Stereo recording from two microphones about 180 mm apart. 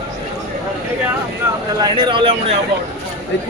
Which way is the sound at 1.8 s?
25° right (ahead or behind).